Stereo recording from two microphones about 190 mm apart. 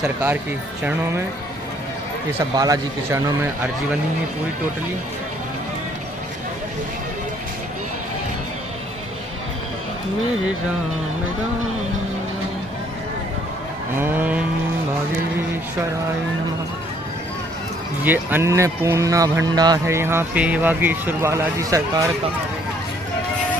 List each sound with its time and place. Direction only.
0.0 s speech: 5° right (ahead or behind)
2.6 s speech: 20° right (ahead or behind)
13.9 s speech: 10° right (ahead or behind)
18.0 s speech: 10° right (ahead or behind)